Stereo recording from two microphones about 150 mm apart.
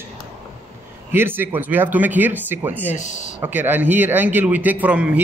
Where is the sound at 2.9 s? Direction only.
55° left (ahead or behind).